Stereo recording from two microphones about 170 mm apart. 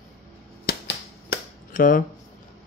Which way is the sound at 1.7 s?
55° left (ahead or behind).